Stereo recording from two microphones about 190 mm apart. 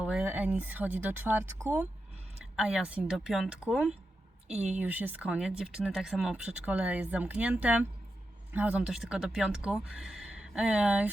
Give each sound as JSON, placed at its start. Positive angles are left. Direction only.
{"t": 0.0, "sound": "speech", "side_deg": -5}